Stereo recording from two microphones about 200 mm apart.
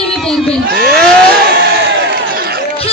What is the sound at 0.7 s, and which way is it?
Crowd, 50° right (ahead or behind).